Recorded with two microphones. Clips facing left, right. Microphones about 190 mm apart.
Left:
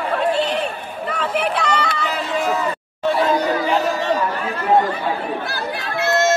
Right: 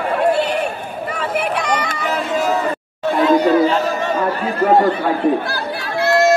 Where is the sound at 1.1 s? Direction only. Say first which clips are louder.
Even; 10° right (ahead or behind).